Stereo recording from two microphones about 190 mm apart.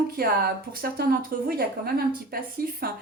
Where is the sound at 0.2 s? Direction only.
50° right (ahead or behind).